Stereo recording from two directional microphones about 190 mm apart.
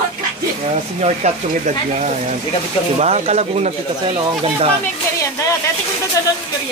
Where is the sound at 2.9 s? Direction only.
35° right (ahead or behind).